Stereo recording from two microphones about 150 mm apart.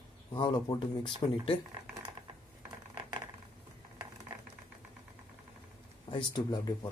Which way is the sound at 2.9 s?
30° right (ahead or behind).